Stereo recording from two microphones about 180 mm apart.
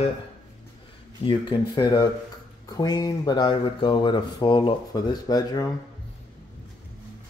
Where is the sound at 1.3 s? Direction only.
25° left (ahead or behind).